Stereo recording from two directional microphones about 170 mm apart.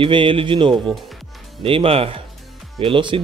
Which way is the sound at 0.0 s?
30° right (ahead or behind).